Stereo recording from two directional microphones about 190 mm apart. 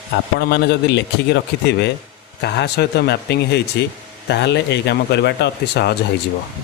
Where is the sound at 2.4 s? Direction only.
60° left (ahead or behind).